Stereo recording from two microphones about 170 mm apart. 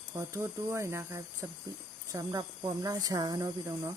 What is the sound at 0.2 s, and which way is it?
Speech, 15° right (ahead or behind).